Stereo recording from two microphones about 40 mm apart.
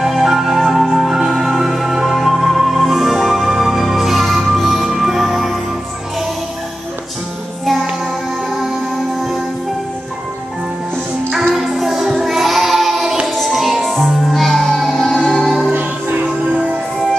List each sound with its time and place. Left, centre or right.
0.0 s music: centre
11.3 s music: centre
15.7 s music: right